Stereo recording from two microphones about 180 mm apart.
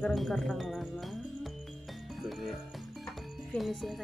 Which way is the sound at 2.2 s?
Centre (ahead or behind).